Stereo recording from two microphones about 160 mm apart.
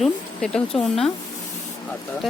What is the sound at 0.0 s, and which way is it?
Speech, 5° left (ahead or behind).